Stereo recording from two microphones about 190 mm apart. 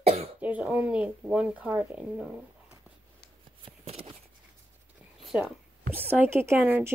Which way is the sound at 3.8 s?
30° right (ahead or behind).